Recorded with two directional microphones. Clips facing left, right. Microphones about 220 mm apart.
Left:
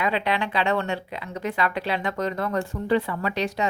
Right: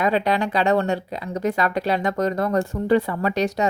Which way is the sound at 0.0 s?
40° right (ahead or behind).